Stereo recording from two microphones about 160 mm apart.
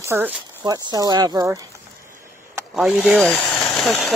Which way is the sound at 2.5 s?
5° right (ahead or behind).